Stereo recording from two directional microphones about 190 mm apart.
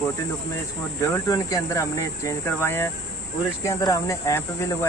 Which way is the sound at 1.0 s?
20° left (ahead or behind).